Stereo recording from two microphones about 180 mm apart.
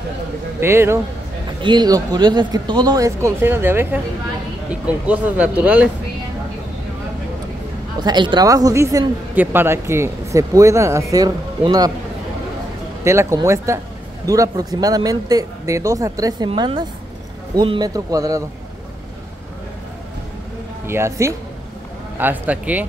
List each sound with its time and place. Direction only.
0.6 s speech: 15° right (ahead or behind)
1.6 s a woman's voice: 25° right (ahead or behind); by 5.9 s 10° right (ahead or behind)
8.0 s a woman's voice: 25° right (ahead or behind)
13.0 s a woman's voice: 15° right (ahead or behind)
20.8 s speech: 15° right (ahead or behind)